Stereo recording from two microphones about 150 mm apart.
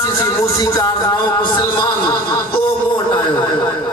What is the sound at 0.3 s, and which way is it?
A man's voice, 20° left (ahead or behind).